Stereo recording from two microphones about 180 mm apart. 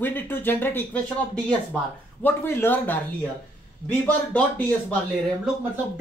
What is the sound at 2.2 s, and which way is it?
Speech, 10° left (ahead or behind).